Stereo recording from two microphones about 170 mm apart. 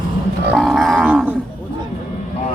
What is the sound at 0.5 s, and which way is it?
Speech, centre (ahead or behind).